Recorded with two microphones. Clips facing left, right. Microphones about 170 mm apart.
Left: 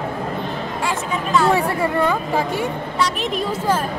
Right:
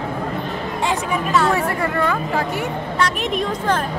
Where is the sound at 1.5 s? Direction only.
15° left (ahead or behind).